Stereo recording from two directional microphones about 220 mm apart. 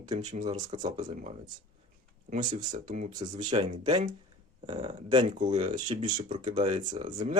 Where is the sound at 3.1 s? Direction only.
20° right (ahead or behind).